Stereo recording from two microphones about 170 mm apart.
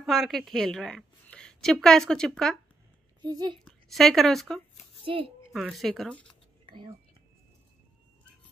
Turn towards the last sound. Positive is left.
turn(degrees=-30)  # may be behind; listen again after turning